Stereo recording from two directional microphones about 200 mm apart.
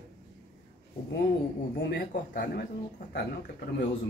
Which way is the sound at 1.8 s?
45° left (ahead or behind).